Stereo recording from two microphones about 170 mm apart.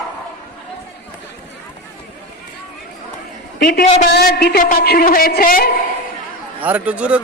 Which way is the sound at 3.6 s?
70° left (ahead or behind).